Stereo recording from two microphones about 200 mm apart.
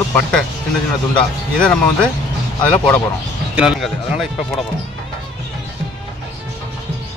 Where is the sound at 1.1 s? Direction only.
5° left (ahead or behind).